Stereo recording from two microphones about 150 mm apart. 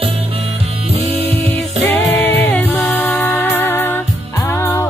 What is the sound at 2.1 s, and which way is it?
Music, 10° left (ahead or behind).